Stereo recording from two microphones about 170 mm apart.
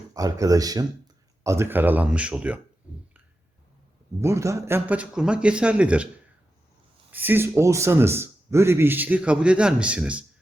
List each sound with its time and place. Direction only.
0.1 s speech: 20° right (ahead or behind)
4.2 s speech: 15° right (ahead or behind)
7.1 s speech: 10° right (ahead or behind)